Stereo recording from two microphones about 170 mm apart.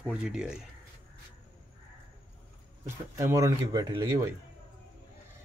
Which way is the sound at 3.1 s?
20° right (ahead or behind).